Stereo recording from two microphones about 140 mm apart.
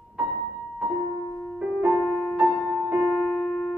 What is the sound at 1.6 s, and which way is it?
Music, 5° right (ahead or behind).